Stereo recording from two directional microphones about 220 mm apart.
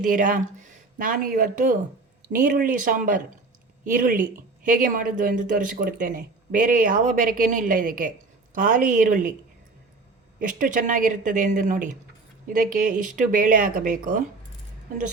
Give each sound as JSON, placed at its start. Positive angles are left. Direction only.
{"t": 0.0, "sound": "speech", "side_deg": -35}
{"t": 10.4, "sound": "speech", "side_deg": -35}